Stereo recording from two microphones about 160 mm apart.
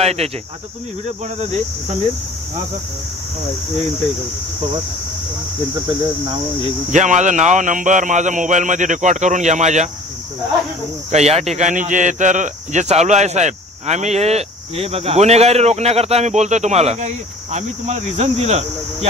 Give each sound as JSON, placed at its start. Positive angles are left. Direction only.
{"t": 0.0, "sound": "speech", "side_deg": -40}
{"t": 5.9, "sound": "speech", "side_deg": -30}
{"t": 6.9, "sound": "speech", "side_deg": -50}
{"t": 11.1, "sound": "speech", "side_deg": -45}